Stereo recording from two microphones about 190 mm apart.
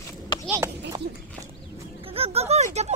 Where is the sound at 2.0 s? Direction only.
30° right (ahead or behind).